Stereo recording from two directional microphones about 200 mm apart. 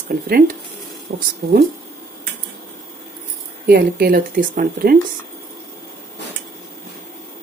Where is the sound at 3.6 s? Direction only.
50° right (ahead or behind).